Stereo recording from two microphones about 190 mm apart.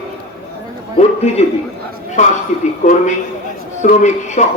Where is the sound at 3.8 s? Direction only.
40° left (ahead or behind).